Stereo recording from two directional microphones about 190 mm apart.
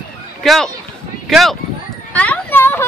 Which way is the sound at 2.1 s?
10° left (ahead or behind).